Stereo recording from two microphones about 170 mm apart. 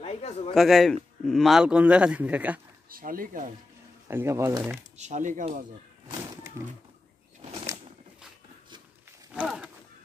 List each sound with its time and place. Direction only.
0.0 s a man's voice: 40° left (ahead or behind)
0.6 s a man's voice: centre (ahead or behind)
2.9 s speech: 55° right (ahead or behind)
4.1 s a man's voice: 15° right (ahead or behind)
4.9 s speech: 45° right (ahead or behind)
6.6 s a man's voice: 15° right (ahead or behind)
9.3 s wild animals: 5° right (ahead or behind)